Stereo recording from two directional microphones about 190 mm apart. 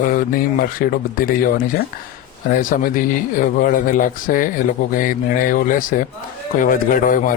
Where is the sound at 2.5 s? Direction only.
45° left (ahead or behind).